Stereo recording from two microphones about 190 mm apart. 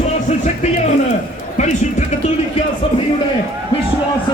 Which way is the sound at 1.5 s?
40° left (ahead or behind).